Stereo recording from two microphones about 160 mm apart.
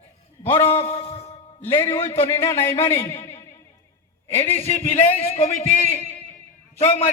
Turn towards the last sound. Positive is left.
turn(degrees=40)  # may be behind; listen again after turning